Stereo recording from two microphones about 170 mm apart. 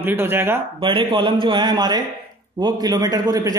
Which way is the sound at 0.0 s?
15° right (ahead or behind).